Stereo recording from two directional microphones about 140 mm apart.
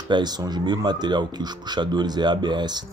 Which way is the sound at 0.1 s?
30° right (ahead or behind).